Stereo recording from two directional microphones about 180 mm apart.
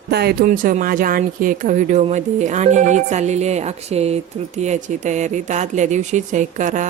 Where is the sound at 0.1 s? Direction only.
65° right (ahead or behind).